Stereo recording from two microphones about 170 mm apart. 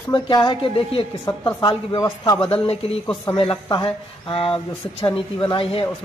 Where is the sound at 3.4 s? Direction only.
30° left (ahead or behind).